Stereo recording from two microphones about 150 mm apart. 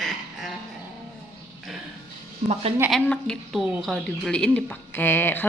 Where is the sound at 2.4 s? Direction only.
40° right (ahead or behind).